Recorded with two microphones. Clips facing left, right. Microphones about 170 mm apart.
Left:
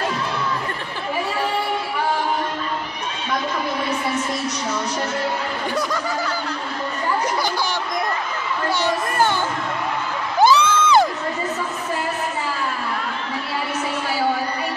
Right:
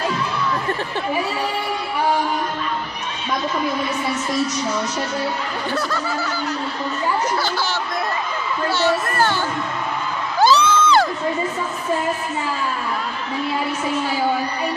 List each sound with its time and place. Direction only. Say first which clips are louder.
10.4 s music: even; 20° left (ahead or behind)